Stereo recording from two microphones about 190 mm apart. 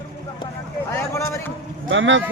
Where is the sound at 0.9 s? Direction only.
15° left (ahead or behind).